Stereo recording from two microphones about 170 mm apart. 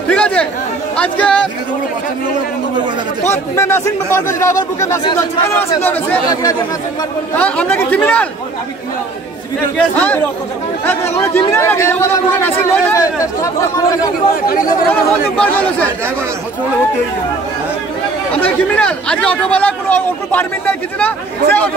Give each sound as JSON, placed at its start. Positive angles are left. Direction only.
{"t": 0.1, "sound": "speech", "side_deg": 5}
{"t": 3.3, "sound": "speech", "side_deg": 15}
{"t": 7.3, "sound": "speech", "side_deg": 10}
{"t": 9.8, "sound": "speech", "side_deg": 10}
{"t": 14.9, "sound": "speech", "side_deg": 10}
{"t": 18.3, "sound": "speech", "side_deg": 10}